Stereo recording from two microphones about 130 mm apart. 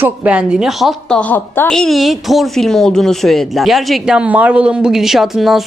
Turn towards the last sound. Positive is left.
turn(degrees=0)  # may be behind; listen again after turning